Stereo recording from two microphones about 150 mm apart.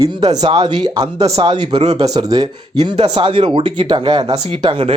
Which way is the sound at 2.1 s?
25° right (ahead or behind).